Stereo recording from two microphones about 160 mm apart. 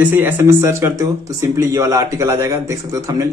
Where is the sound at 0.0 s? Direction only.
10° right (ahead or behind).